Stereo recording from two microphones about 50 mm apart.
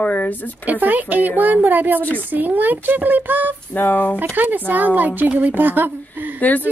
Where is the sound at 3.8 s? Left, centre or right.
Left.